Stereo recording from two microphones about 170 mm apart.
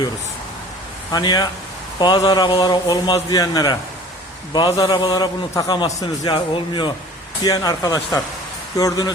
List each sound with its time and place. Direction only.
1.1 s a man's voice: 25° left (ahead or behind)